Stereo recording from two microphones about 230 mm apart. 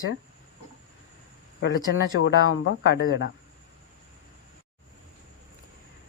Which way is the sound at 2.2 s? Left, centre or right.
Left.